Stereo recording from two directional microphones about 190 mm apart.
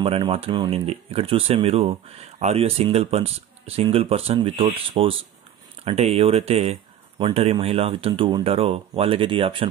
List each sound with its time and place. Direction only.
0.0 s speech: 30° right (ahead or behind)